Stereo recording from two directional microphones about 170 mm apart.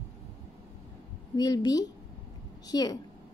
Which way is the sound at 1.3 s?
25° left (ahead or behind).